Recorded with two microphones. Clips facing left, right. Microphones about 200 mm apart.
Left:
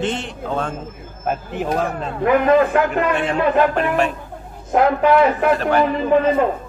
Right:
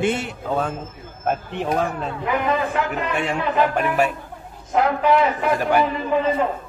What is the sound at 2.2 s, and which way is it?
Speech, 55° left (ahead or behind).